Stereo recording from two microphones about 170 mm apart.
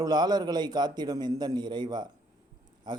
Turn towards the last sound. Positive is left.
turn(degrees=-25)  # may be behind; listen again after turning